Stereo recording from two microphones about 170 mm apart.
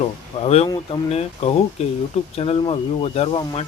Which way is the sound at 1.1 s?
40° left (ahead or behind).